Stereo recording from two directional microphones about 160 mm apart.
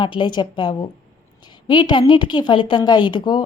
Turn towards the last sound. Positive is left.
turn(degrees=30)  # may be behind; listen again after turning